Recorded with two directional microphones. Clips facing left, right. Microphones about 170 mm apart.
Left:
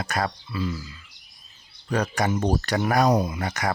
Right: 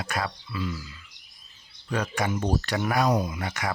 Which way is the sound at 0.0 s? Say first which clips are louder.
Left 4 dB; 40° left (ahead or behind).